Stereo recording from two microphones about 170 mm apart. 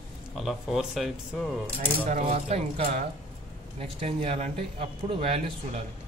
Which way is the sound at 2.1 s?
40° right (ahead or behind).